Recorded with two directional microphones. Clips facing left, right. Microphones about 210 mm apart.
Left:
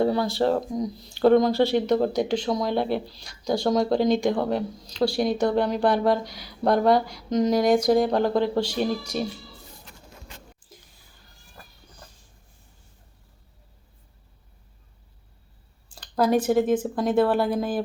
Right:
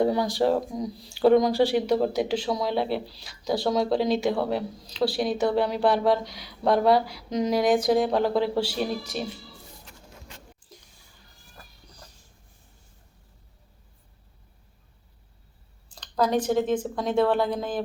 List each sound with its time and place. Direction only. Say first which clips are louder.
0.0 s speech: even; 15° right (ahead or behind)
15.9 s speech: left 3 dB; 10° left (ahead or behind)